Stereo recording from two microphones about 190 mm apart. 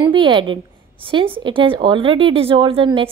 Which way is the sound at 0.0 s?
25° right (ahead or behind).